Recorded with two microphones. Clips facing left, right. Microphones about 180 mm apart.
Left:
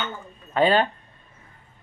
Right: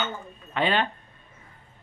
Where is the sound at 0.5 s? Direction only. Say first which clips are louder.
Left 5 dB; 40° left (ahead or behind).